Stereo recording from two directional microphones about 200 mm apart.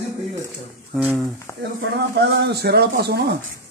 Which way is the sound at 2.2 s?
55° right (ahead or behind).